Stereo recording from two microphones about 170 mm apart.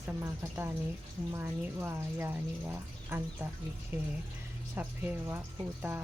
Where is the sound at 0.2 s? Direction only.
15° right (ahead or behind).